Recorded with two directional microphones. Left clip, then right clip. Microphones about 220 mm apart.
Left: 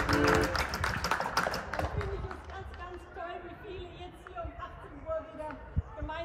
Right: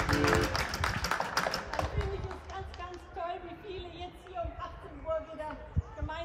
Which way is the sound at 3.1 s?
35° right (ahead or behind).